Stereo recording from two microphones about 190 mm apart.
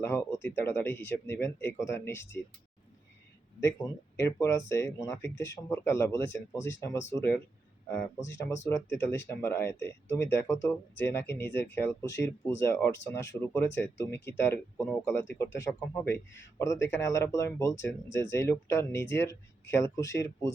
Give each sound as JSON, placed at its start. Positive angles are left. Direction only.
{"t": 0.0, "sound": "speech", "side_deg": 10}
{"t": 3.6, "sound": "speech", "side_deg": 15}
{"t": 8.6, "sound": "speech", "side_deg": 15}